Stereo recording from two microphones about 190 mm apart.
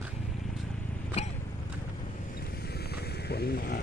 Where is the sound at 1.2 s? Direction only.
35° left (ahead or behind).